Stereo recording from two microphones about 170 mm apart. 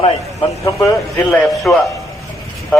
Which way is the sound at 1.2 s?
5° left (ahead or behind).